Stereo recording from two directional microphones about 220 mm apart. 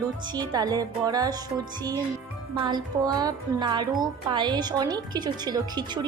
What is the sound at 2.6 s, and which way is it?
A woman's voice, 20° right (ahead or behind).